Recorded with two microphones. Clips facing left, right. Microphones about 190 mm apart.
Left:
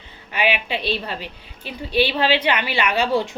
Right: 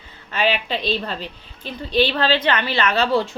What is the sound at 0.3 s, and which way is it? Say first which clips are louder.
A woman's voice: right 1 dB; 15° left (ahead or behind).